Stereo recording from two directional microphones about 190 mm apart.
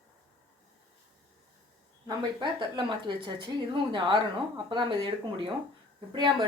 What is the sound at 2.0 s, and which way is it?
A woman's voice, 20° right (ahead or behind).